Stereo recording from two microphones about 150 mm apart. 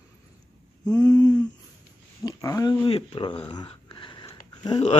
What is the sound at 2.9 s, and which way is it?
Speech, 35° left (ahead or behind).